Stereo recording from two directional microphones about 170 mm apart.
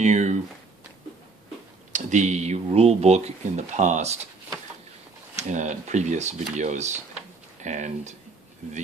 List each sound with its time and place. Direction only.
0.0 s speech: 45° right (ahead or behind)
1.9 s speech: 45° right (ahead or behind)
5.3 s speech: 45° right (ahead or behind)